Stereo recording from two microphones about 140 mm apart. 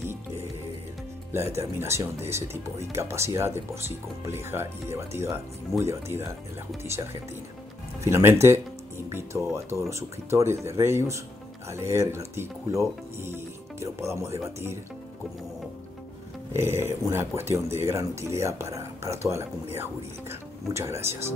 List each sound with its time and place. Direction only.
1.5 s speech: 20° right (ahead or behind)
16.5 s speech: 20° right (ahead or behind)